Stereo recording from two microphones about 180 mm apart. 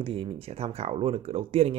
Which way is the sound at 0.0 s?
30° right (ahead or behind).